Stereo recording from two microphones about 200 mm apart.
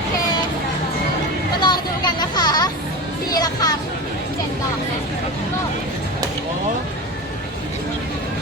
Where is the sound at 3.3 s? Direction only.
20° left (ahead or behind).